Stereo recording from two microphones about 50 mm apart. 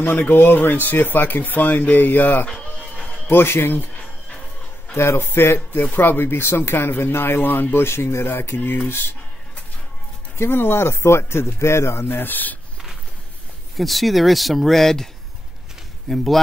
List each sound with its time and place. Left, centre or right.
0.0 s speech: left
3.3 s speech: left
4.9 s speech: left
5.7 s speech: left
7.8 s speech: left
10.3 s speech: left
13.7 s speech: centre